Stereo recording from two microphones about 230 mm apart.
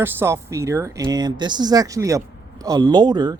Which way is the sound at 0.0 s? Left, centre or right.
Centre.